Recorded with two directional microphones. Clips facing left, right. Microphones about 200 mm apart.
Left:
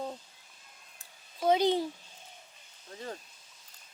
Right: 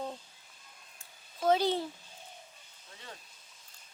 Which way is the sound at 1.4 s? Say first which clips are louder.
Left 2 dB; 15° left (ahead or behind).